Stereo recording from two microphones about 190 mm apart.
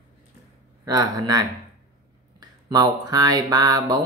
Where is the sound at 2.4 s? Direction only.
20° right (ahead or behind).